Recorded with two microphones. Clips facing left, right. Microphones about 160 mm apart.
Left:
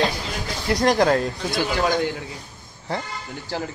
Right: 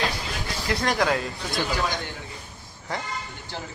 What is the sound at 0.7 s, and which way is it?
Speech, 40° left (ahead or behind).